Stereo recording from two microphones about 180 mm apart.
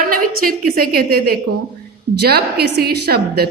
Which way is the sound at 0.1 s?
55° right (ahead or behind).